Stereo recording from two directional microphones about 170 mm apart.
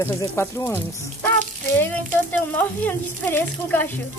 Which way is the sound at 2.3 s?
10° left (ahead or behind).